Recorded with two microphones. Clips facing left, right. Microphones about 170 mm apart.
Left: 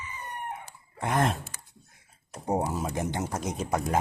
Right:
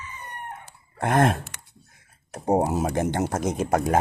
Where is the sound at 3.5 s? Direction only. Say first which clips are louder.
Right 5 dB; 80° right.